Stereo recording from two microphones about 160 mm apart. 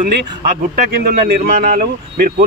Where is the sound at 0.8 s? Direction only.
70° right (ahead or behind).